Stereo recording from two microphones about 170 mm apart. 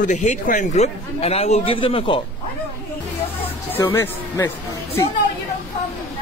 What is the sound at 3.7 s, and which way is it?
Speech, 15° left (ahead or behind).